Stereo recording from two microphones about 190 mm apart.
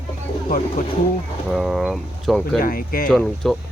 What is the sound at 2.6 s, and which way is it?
Speech, 50° left (ahead or behind).